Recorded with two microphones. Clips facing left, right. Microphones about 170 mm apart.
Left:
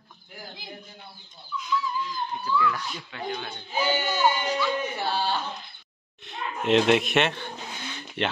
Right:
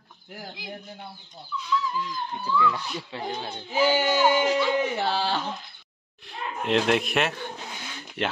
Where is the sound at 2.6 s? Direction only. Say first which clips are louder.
Right 2 dB; 25° right (ahead or behind).